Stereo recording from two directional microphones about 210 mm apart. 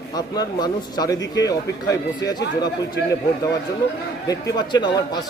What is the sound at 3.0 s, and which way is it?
Speech, 55° left (ahead or behind).